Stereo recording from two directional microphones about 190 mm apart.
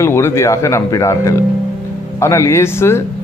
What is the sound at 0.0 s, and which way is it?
Speech, 15° left (ahead or behind).